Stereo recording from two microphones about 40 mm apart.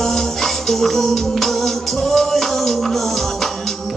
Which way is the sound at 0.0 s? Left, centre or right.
Centre.